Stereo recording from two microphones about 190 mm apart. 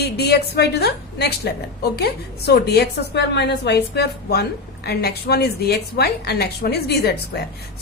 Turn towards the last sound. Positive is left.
turn(degrees=55)  # may be behind; listen again after turning